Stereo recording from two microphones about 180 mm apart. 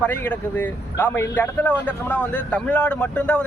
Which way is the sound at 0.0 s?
10° left (ahead or behind).